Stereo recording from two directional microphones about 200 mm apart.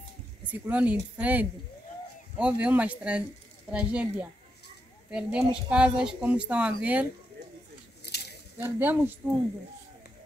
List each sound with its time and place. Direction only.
0.5 s speech: 5° right (ahead or behind)
8.1 s a sound: 55° left (ahead or behind)
8.5 s speech: 10° right (ahead or behind)